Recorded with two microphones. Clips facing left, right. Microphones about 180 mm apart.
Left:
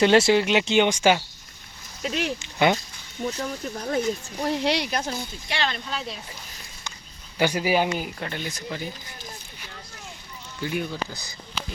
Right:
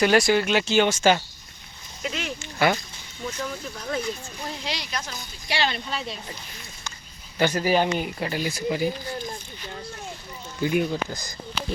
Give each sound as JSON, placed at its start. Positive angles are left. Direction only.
{"t": 0.0, "sound": "speech", "side_deg": 25}
{"t": 2.4, "sound": "speech", "side_deg": 20}
{"t": 3.2, "sound": "speech", "side_deg": 35}
{"t": 4.4, "sound": "speech", "side_deg": 65}
{"t": 5.0, "sound": "speech", "side_deg": 30}
{"t": 5.5, "sound": "speech", "side_deg": -5}
{"t": 7.3, "sound": "speech", "side_deg": 10}
{"t": 7.9, "sound": "speech", "side_deg": -5}
{"t": 10.6, "sound": "speech", "side_deg": -15}